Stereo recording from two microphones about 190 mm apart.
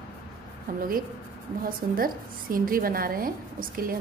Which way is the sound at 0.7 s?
50° right (ahead or behind).